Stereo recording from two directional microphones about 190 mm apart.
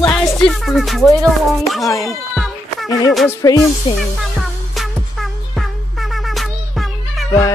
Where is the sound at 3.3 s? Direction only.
15° left (ahead or behind).